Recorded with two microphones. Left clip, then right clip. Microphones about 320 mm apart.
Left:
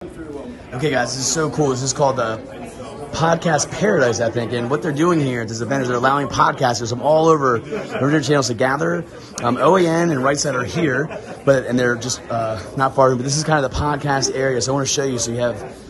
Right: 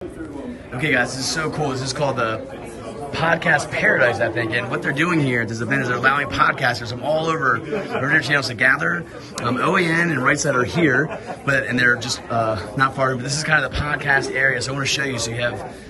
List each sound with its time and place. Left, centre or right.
0.7 s a man's voice: centre
7.5 s a man's voice: centre
8.1 s a man's voice: centre